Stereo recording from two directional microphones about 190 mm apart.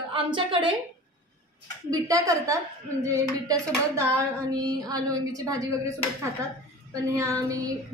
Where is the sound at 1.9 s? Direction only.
20° right (ahead or behind).